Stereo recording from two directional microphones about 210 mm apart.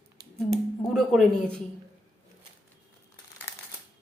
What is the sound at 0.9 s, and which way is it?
Speech, centre (ahead or behind).